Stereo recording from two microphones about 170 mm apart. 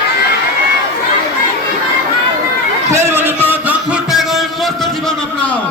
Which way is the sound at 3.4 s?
10° right (ahead or behind).